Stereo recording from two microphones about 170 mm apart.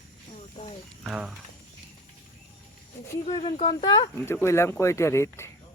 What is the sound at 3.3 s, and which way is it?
Speech, 30° left (ahead or behind).